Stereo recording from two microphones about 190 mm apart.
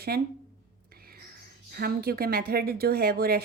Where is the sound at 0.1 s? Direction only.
55° right (ahead or behind).